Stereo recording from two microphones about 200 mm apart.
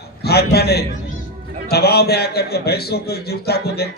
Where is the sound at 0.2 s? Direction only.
55° left (ahead or behind).